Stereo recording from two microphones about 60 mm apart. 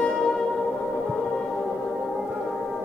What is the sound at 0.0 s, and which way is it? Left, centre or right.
Music, centre.